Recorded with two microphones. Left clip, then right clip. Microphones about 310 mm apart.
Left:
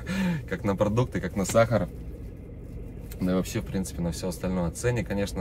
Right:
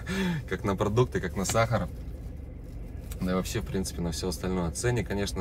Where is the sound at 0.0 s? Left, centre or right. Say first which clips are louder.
Left 1 dB; centre.